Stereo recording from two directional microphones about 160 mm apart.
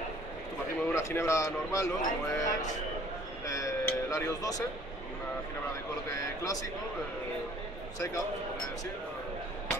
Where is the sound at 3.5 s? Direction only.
20° left (ahead or behind).